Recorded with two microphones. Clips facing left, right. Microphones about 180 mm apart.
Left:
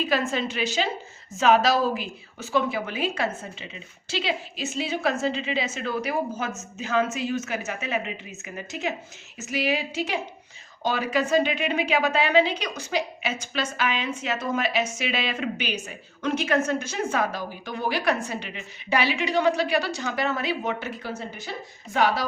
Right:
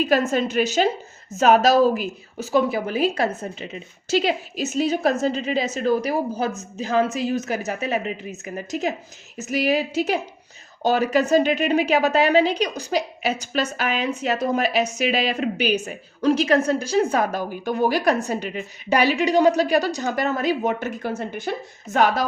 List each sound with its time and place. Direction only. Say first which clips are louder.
0.0 s a woman's voice: right 5 dB; 45° right (ahead or behind)